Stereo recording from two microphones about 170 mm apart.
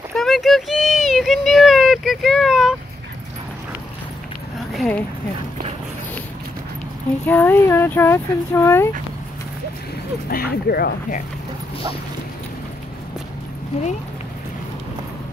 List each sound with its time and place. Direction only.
0.1 s a sound: centre (ahead or behind)
4.7 s speech: 5° left (ahead or behind)
7.2 s speech: 10° left (ahead or behind)
10.3 s speech: 65° left (ahead or behind)